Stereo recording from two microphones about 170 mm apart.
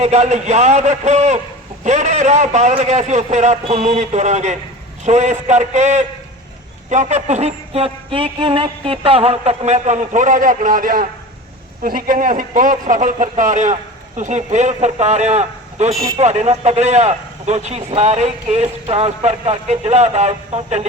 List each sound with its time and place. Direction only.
0.0 s a man's voice: 45° right (ahead or behind)